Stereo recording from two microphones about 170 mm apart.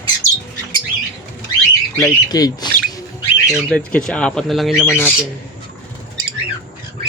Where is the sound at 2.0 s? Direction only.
20° left (ahead or behind).